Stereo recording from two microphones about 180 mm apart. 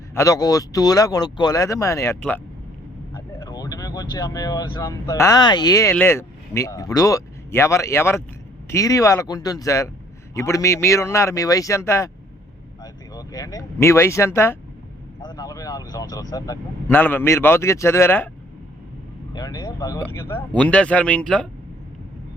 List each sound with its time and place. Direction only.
0.1 s speech: 15° left (ahead or behind)
15.2 s vehicle: 20° left (ahead or behind)
16.3 s speech: 15° left (ahead or behind)
19.3 s speech: 20° left (ahead or behind)